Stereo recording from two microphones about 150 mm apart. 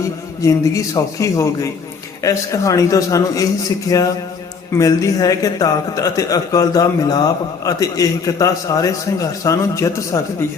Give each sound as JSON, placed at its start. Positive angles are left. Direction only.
{"t": 0.4, "sound": "a man's voice", "side_deg": 20}